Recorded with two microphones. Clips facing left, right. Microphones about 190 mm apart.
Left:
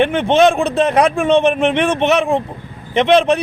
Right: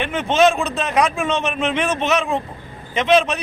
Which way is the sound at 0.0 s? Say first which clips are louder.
Left 5 dB; 60° left (ahead or behind).